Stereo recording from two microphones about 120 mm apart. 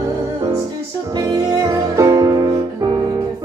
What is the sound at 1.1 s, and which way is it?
Music, 30° right (ahead or behind).